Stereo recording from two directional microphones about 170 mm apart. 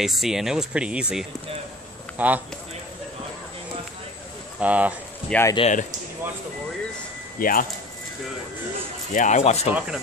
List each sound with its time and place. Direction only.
0.0 s a man's voice: centre (ahead or behind)
4.6 s speech: 10° right (ahead or behind)
5.3 s speech: 15° left (ahead or behind)
5.6 s speech: 45° left (ahead or behind)
7.3 s speech: 55° left (ahead or behind)
9.1 s speech: 45° left (ahead or behind)
9.8 s speech: 5° right (ahead or behind)